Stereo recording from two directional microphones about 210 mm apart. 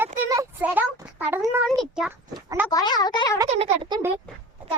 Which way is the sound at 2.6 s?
20° left (ahead or behind).